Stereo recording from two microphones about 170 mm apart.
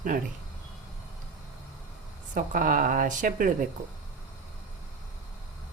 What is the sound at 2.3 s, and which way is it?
A woman's voice, 50° right (ahead or behind).